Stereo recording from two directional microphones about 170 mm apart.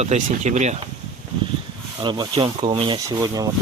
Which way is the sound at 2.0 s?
25° right (ahead or behind).